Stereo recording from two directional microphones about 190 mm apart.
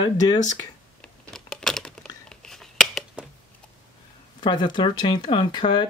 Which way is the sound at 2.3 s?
5° left (ahead or behind).